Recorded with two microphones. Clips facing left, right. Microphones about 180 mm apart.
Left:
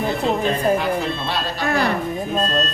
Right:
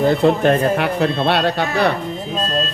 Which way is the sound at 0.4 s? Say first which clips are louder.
Right 3 dB; 60° right (ahead or behind).